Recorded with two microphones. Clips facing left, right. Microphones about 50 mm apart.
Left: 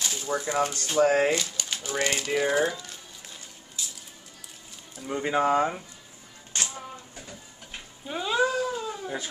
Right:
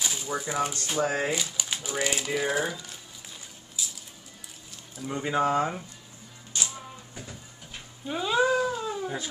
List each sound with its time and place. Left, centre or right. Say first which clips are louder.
0.0 s speech: left 2 dB; centre
1.0 s speech: left 7 dB; left
1.3 s speech: left 2 dB; centre
3.8 s squish: right 1 dB; centre
4.9 s speech: left 1 dB; centre
6.5 s music: left 1 dB; left
8.1 s speech: even; centre
8.5 s cat: right 3 dB; centre
8.7 s cat: right 1 dB; centre